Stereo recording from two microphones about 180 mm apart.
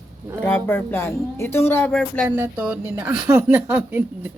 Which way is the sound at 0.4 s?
10° left (ahead or behind).